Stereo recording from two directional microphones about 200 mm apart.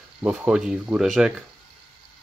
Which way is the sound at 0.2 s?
5° right (ahead or behind).